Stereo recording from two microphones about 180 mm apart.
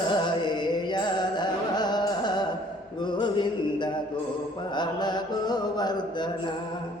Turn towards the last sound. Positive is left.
turn(degrees=25)  # may be behind; listen again after turning